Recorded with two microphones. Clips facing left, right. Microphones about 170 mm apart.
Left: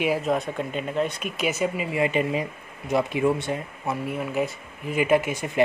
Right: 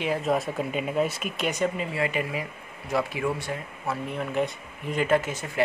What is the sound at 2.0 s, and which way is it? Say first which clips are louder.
Speech: left 5 dB; 20° left (ahead or behind).